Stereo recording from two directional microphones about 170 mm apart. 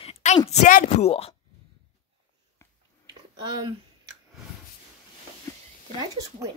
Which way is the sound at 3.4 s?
25° right (ahead or behind).